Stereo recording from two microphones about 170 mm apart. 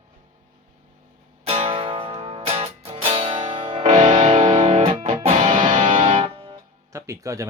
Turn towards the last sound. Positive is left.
turn(degrees=-20)  # may be behind; listen again after turning